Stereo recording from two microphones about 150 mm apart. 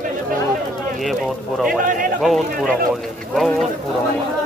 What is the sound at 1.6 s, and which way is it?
Speech, 65° right (ahead or behind).